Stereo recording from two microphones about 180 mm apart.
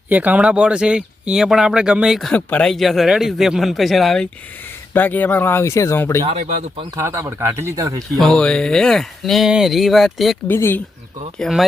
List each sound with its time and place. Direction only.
0.1 s speech: 10° right (ahead or behind); by 6.2 s 15° left (ahead or behind)
6.2 s speech: 40° right (ahead or behind)
6.9 s speech: 15° right (ahead or behind)
8.2 s speech: 5° left (ahead or behind)
10.5 s speech: 10° left (ahead or behind)
11.3 s speech: centre (ahead or behind)